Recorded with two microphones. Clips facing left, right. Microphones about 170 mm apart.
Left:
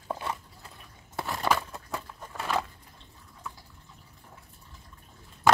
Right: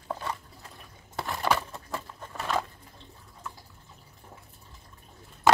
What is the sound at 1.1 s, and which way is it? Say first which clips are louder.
Crushing: even; centre (ahead or behind).